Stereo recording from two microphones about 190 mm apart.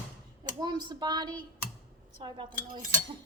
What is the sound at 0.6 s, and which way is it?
A woman's voice, 20° right (ahead or behind).